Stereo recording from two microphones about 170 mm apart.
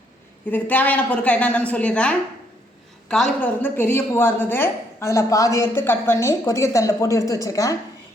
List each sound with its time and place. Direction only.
0.5 s a woman's voice: 10° left (ahead or behind)
3.4 s a woman's voice: 10° left (ahead or behind)